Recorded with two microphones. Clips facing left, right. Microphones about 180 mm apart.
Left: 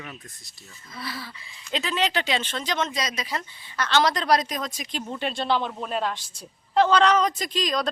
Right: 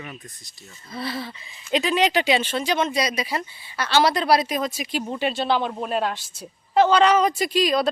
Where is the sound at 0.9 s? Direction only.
25° right (ahead or behind).